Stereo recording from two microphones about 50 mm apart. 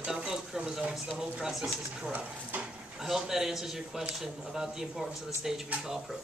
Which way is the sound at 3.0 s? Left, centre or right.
Centre.